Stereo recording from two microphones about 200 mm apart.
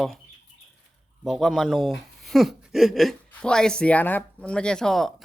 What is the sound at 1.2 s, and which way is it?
Speech, centre (ahead or behind).